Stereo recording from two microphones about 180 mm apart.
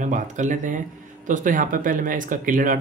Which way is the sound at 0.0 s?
45° right (ahead or behind).